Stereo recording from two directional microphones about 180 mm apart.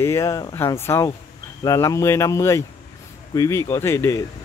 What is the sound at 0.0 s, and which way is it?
Speech, 15° left (ahead or behind).